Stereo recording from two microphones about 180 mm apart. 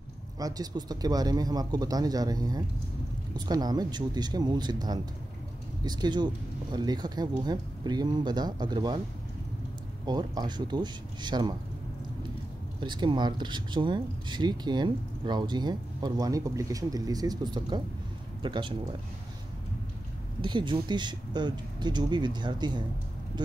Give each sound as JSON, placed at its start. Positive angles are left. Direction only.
{"t": 0.4, "sound": "speech", "side_deg": -20}
{"t": 10.0, "sound": "speech", "side_deg": -25}
{"t": 12.8, "sound": "speech", "side_deg": -25}
{"t": 20.4, "sound": "speech", "side_deg": -25}